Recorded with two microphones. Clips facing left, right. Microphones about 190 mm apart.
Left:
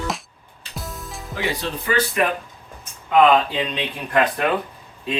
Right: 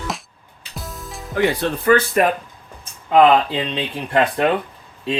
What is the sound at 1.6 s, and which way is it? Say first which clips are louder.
Speech: right 5 dB; 55° right (ahead or behind).